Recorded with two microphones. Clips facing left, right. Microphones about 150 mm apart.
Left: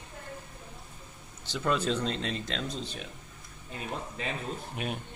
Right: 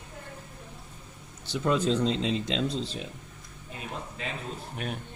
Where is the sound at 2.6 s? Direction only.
25° right (ahead or behind).